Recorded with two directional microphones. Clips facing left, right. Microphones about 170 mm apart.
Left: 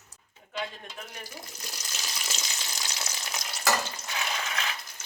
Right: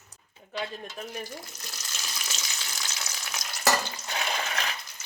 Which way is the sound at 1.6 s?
15° left (ahead or behind).